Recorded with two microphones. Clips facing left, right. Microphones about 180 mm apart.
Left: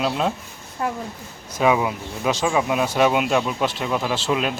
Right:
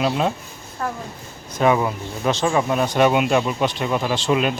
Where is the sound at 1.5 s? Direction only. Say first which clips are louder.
Right 1 dB; 5° left (ahead or behind).